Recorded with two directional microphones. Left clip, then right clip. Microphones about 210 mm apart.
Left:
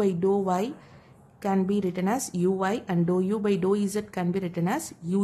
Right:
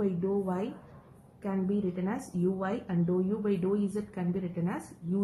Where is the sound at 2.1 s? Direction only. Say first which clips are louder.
Left 7 dB; 50° left (ahead or behind).